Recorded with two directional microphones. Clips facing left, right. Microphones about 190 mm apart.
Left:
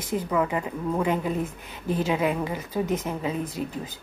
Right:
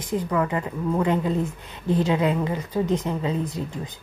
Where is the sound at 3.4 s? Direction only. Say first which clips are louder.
Right 1 dB; 15° right (ahead or behind).